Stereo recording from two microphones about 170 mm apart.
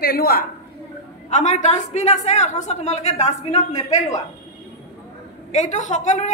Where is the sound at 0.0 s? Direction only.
65° left (ahead or behind).